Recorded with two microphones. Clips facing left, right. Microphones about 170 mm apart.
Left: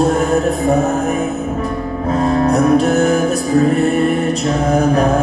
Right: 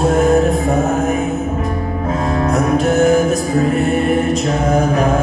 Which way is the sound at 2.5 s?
35° left (ahead or behind).